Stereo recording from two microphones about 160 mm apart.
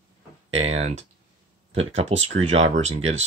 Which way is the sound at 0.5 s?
40° right (ahead or behind).